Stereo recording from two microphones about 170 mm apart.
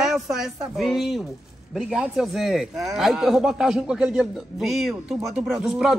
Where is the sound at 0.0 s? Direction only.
5° right (ahead or behind).